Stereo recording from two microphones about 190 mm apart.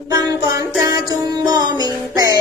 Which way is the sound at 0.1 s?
20° right (ahead or behind).